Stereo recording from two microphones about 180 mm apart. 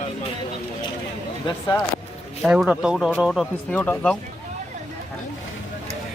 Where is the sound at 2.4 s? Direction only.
Centre (ahead or behind).